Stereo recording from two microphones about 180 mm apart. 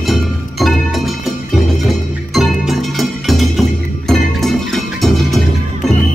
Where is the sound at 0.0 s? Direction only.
Centre (ahead or behind).